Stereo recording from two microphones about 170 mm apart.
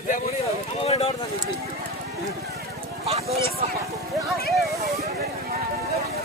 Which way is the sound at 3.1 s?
40° right (ahead or behind).